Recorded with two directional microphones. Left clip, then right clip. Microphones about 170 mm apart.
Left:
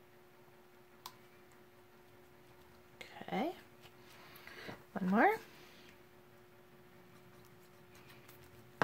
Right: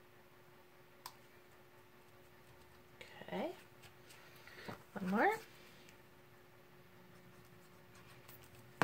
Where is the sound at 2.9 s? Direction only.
40° left (ahead or behind).